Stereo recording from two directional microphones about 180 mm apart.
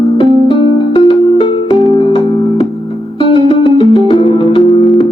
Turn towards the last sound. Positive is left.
turn(degrees=30)  # may be behind; listen again after turning